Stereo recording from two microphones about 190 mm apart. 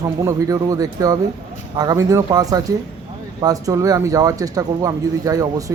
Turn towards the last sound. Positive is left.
turn(degrees=-20)  # may be behind; listen again after turning